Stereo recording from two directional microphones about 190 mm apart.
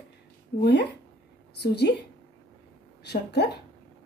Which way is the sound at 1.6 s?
60° left (ahead or behind).